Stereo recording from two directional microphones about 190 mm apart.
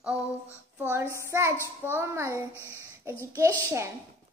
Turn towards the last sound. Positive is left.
turn(degrees=-15)  # may be behind; listen again after turning